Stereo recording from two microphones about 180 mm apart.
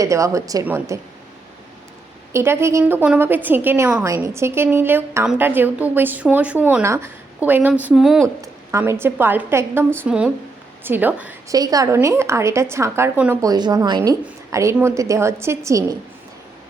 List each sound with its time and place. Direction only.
0.0 s a woman's voice: 15° right (ahead or behind)
2.3 s a woman's voice: 15° right (ahead or behind)
8.4 s a woman's voice: 15° right (ahead or behind)
11.5 s a woman's voice: 20° right (ahead or behind)
13.4 s a woman's voice: 20° right (ahead or behind)